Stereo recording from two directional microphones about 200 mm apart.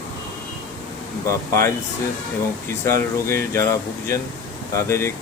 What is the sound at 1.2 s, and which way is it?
Speech, 15° left (ahead or behind).